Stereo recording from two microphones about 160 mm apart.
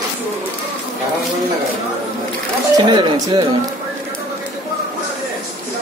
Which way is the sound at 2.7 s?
30° right (ahead or behind).